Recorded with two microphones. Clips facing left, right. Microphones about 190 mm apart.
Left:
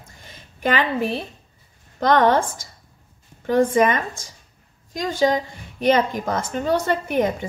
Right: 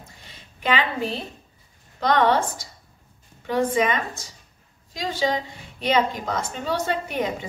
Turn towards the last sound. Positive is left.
turn(degrees=50)  # may be behind; listen again after turning